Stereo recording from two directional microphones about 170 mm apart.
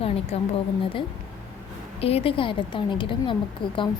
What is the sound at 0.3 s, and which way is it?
Speech, 40° left (ahead or behind).